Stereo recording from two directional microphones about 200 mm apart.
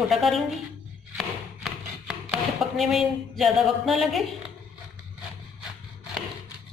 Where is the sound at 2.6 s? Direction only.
Centre (ahead or behind).